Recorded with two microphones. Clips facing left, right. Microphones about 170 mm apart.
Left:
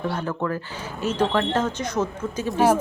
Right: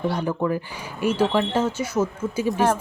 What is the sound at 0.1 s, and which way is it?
A woman's voice, 15° right (ahead or behind).